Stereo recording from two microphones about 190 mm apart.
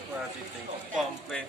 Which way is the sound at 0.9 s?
Centre (ahead or behind).